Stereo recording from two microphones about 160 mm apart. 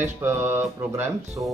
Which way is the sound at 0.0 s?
15° right (ahead or behind).